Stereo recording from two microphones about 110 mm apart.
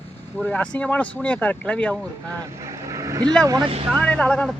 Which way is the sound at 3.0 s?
30° right (ahead or behind).